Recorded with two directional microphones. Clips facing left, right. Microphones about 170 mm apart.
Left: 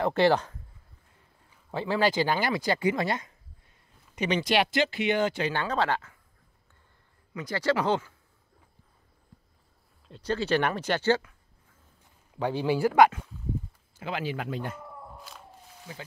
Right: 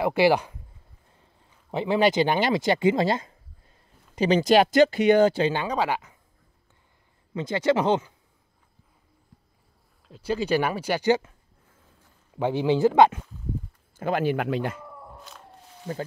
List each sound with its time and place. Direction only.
0.0 s speech: 10° right (ahead or behind)
1.7 s speech: 20° right (ahead or behind); by 5.5 s 35° right (ahead or behind)
5.5 s speech: 15° right (ahead or behind)
7.3 s speech: 20° right (ahead or behind)
10.0 s speech: 5° right (ahead or behind)
12.4 s speech: 20° right (ahead or behind)
13.9 s speech: 50° right (ahead or behind); by 14.8 s 85° right
14.8 s a sound: centre (ahead or behind)
15.9 s speech: 50° right (ahead or behind)